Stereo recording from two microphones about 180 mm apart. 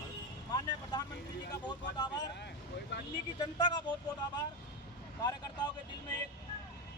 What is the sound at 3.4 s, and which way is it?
Speech, 25° left (ahead or behind).